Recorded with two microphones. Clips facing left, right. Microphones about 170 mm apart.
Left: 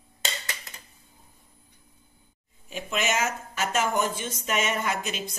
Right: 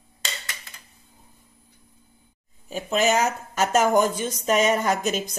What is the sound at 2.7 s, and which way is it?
Speech, 40° right (ahead or behind).